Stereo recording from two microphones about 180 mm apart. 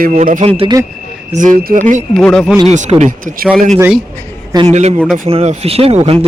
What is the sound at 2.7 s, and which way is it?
Speech, 40° right (ahead or behind).